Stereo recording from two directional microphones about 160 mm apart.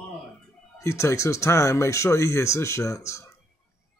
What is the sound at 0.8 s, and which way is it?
Speech, 15° left (ahead or behind).